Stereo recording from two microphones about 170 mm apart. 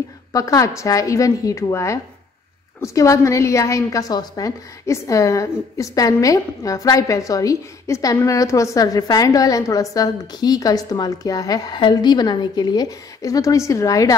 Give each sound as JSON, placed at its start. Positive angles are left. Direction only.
{"t": 0.3, "sound": "a woman's voice", "side_deg": 20}